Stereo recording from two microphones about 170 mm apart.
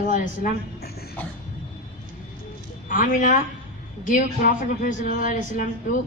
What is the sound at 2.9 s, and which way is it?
A man's voice, 55° left (ahead or behind).